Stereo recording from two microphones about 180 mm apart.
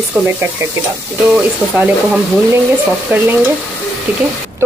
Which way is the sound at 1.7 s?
5° right (ahead or behind).